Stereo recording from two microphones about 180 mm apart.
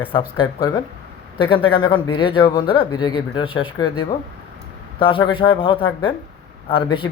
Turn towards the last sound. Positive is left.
turn(degrees=30)  # may be behind; listen again after turning